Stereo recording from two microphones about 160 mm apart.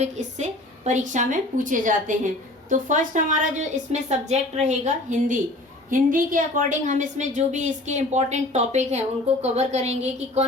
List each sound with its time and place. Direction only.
0.0 s a woman's voice: 45° right (ahead or behind)